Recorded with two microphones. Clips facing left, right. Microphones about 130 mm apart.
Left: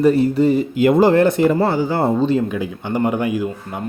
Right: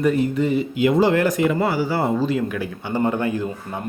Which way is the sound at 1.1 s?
30° left (ahead or behind).